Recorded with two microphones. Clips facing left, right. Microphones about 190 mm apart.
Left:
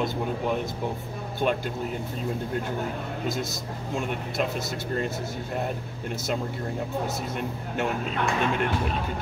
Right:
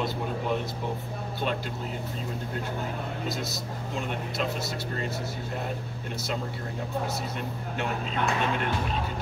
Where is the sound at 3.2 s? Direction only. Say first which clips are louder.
Left 3 dB; 50° left (ahead or behind).